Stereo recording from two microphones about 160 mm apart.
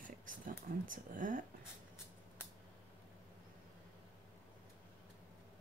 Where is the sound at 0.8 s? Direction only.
55° right (ahead or behind).